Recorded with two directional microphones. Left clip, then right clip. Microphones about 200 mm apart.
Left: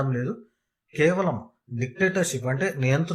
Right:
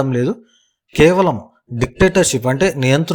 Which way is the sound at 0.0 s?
35° right (ahead or behind).